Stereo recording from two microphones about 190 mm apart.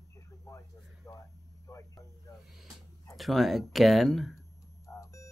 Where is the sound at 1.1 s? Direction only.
15° left (ahead or behind).